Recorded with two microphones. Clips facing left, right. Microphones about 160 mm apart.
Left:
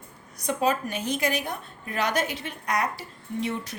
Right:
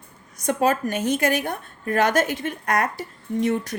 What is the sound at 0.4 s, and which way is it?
A woman's voice, 50° right (ahead or behind).